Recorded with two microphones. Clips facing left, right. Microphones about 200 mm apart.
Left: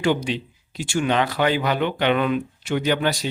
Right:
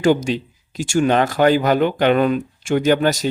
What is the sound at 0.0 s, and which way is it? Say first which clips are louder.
Speech: right 5 dB; 45° right (ahead or behind).